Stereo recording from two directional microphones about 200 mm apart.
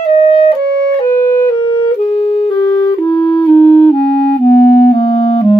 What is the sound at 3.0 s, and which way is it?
Music, 5° left (ahead or behind).